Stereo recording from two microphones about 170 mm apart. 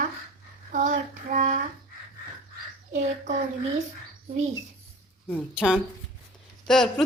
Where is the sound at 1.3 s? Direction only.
50° right (ahead or behind).